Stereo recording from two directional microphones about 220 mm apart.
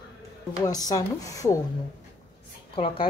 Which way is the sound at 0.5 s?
15° left (ahead or behind).